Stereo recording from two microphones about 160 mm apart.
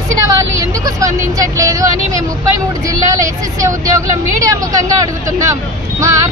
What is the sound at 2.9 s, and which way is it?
Speech, 20° right (ahead or behind).